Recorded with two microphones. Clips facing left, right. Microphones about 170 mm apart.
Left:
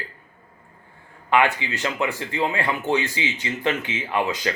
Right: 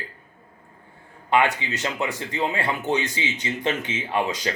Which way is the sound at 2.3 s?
20° right (ahead or behind).